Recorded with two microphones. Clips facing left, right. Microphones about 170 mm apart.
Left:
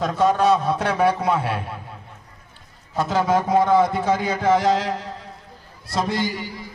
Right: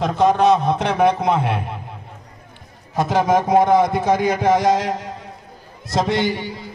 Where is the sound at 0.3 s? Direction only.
15° right (ahead or behind).